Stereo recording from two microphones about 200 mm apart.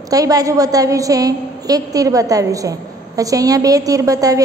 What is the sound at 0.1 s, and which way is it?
A woman's voice, 15° right (ahead or behind).